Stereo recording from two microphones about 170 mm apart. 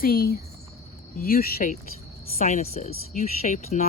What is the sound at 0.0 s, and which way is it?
Speech, 60° left (ahead or behind).